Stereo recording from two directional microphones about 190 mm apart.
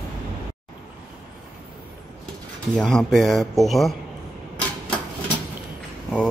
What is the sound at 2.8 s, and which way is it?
Speech, centre (ahead or behind).